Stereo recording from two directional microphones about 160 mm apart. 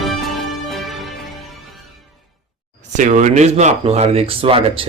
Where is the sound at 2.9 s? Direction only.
50° right (ahead or behind).